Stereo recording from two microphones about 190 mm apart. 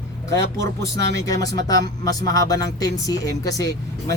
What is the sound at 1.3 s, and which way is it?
A man's voice, 20° left (ahead or behind).